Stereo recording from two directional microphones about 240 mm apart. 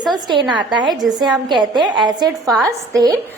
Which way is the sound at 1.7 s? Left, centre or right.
Centre.